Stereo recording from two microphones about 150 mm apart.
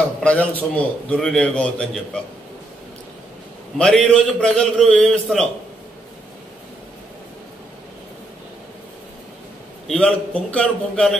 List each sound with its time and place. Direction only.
0.2 s a man's voice: 10° left (ahead or behind)
3.7 s a man's voice: 5° left (ahead or behind)
9.8 s a man's voice: 5° left (ahead or behind)